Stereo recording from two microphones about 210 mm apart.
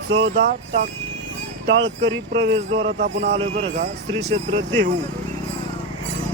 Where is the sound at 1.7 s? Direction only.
60° right (ahead or behind).